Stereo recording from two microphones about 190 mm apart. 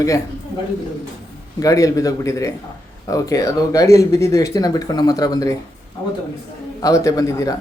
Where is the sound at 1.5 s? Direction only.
20° left (ahead or behind).